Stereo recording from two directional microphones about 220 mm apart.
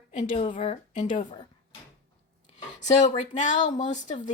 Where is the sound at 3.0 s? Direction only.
30° left (ahead or behind).